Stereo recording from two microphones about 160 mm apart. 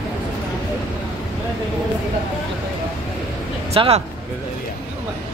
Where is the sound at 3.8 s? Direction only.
35° right (ahead or behind).